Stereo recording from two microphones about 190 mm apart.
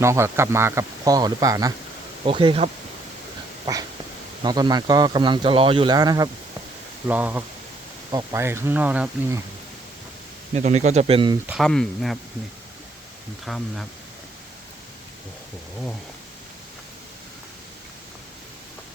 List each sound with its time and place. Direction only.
0.0 s speech: 15° right (ahead or behind)
4.4 s speech: 20° right (ahead or behind)
7.1 s speech: 10° right (ahead or behind)
10.5 s speech: 35° right (ahead or behind)
11.4 s speech: centre (ahead or behind)
13.4 s speech: centre (ahead or behind)